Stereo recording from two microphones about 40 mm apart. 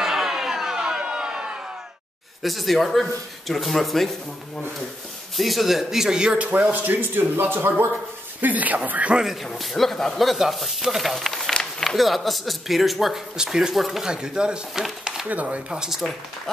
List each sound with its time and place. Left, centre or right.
0.0 s music: centre
2.4 s speech: centre
5.4 s speech: centre
6.3 s speech: right
7.2 s speech: right
8.4 s speech: right
9.2 s speech: centre
9.6 s speech: centre
13.4 s speech: centre
14.0 s speech: centre
14.8 s a sound: centre
15.4 s speech: right